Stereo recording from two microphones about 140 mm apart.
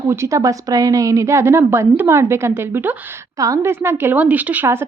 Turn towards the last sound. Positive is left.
turn(degrees=-15)  # may be behind; listen again after turning